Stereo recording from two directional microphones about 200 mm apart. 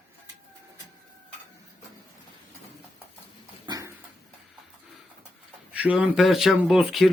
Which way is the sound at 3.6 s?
20° right (ahead or behind).